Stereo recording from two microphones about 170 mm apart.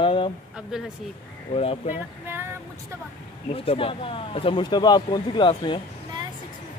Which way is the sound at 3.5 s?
35° left (ahead or behind).